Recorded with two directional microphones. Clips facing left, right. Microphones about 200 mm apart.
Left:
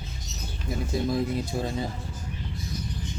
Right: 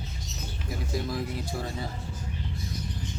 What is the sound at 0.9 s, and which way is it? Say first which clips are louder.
Speech: left 5 dB; 25° left (ahead or behind).